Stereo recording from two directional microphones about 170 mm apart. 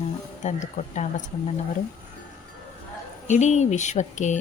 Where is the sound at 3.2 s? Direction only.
45° left (ahead or behind).